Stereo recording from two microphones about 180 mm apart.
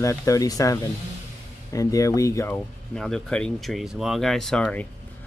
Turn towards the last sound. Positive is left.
turn(degrees=5)  # may be behind; listen again after turning